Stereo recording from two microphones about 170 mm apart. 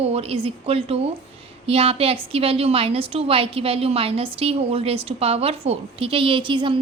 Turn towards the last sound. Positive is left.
turn(degrees=-30)  # may be behind; listen again after turning